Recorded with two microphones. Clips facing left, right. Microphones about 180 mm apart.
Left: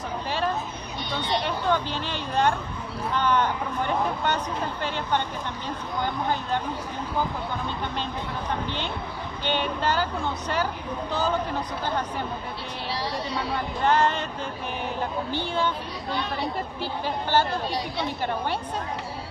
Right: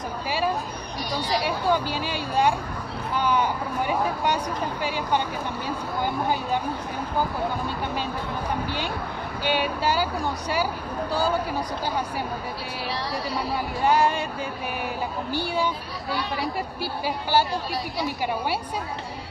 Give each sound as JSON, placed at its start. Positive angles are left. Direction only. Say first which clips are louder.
{"t": 0.3, "sound": "a sound", "louder": "right 2 dB", "side_deg": -10}
{"t": 1.3, "sound": "speech", "louder": "right 1 dB", "side_deg": -10}
{"t": 9.4, "sound": "speech", "louder": "right 2 dB", "side_deg": -10}
{"t": 11.1, "sound": "speech", "louder": "right 1 dB", "side_deg": -10}
{"t": 13.3, "sound": "speech", "louder": "right 1 dB", "side_deg": -5}
{"t": 15.3, "sound": "speech", "louder": "right 3 dB", "side_deg": -10}